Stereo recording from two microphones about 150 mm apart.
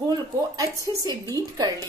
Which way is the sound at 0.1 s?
20° right (ahead or behind).